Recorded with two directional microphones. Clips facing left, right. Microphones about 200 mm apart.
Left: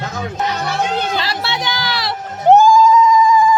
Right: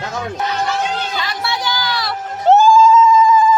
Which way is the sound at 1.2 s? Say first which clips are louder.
Even; 30° left (ahead or behind).